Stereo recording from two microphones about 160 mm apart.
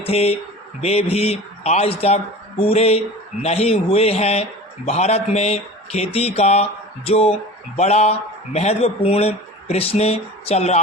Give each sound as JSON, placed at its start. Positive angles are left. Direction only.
{"t": 0.0, "sound": "speech", "side_deg": 40}